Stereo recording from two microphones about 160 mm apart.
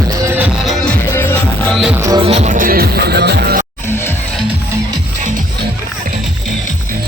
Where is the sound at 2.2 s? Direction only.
45° right (ahead or behind); by 3.6 s 90° right.